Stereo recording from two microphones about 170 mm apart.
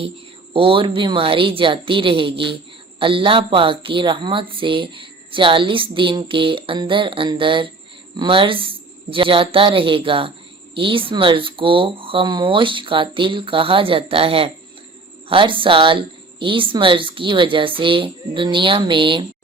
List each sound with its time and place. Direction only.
0.5 s speech: 30° right (ahead or behind)